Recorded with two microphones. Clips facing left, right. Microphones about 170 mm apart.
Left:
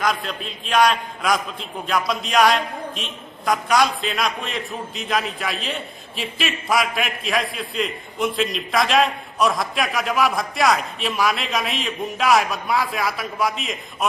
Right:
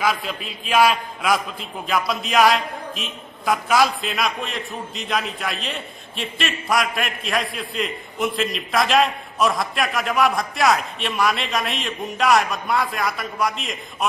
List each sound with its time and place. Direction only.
0.0 s a man's voice: 5° right (ahead or behind)